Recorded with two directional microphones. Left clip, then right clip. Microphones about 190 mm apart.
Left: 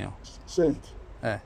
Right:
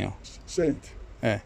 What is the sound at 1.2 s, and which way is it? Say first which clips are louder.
Speech: right 3 dB; 55° right (ahead or behind).